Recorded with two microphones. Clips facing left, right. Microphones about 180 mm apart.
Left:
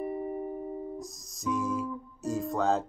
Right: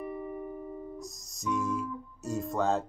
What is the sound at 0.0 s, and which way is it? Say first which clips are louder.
Music: left 4 dB; 35° left (ahead or behind).